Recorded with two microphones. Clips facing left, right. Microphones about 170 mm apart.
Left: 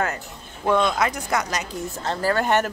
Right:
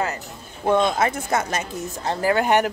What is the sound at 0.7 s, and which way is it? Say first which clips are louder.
Speech: right 1 dB; 50° right (ahead or behind).